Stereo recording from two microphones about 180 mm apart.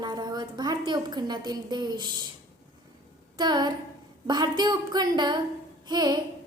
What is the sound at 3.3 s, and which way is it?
A woman's voice, 25° right (ahead or behind).